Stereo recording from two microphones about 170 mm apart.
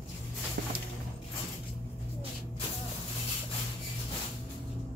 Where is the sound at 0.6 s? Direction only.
75° right (ahead or behind).